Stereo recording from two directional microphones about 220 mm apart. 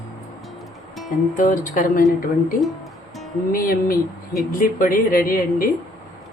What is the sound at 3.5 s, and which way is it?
Speech, 40° left (ahead or behind).